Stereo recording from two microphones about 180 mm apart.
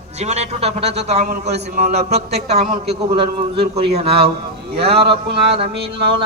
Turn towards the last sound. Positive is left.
turn(degrees=-30)  # may be behind; listen again after turning